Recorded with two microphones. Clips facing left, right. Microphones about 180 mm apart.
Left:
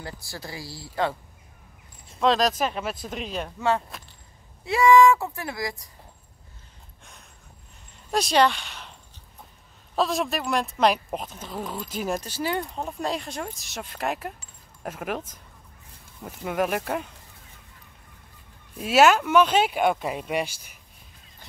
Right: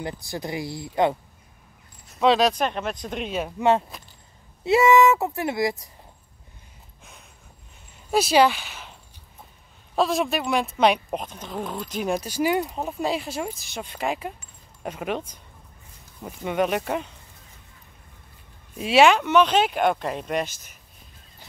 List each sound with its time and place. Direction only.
0.0 s speech: 20° right (ahead or behind)
2.1 s speech: centre (ahead or behind)
3.5 s speech: 20° right (ahead or behind)
8.1 s speech: 5° right (ahead or behind)
9.9 s speech: centre (ahead or behind)
12.3 s speech: 10° right (ahead or behind)
18.8 s speech: centre (ahead or behind)